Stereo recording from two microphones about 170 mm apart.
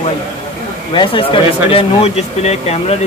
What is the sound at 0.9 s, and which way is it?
Speech, 30° left (ahead or behind).